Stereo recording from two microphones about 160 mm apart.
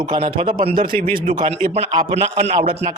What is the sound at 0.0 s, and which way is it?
Speech, 30° right (ahead or behind).